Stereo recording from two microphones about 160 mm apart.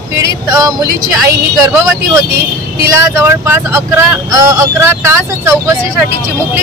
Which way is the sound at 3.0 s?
15° right (ahead or behind).